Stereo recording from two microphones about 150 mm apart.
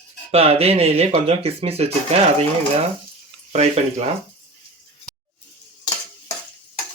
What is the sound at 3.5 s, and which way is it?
Speech, 50° right (ahead or behind).